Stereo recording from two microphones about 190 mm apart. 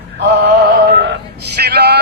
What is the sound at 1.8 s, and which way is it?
Synthetic singing, 60° right (ahead or behind).